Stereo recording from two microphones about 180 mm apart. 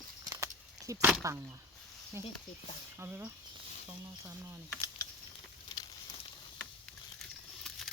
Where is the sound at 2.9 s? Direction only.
15° right (ahead or behind).